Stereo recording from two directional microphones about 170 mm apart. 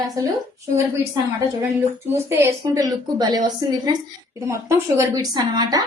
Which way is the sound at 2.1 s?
15° right (ahead or behind).